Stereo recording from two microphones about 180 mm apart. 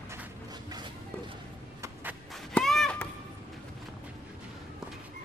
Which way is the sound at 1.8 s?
10° right (ahead or behind).